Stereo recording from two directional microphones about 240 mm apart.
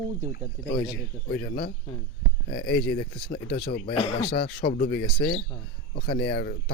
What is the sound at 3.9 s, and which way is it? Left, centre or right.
Speech, left.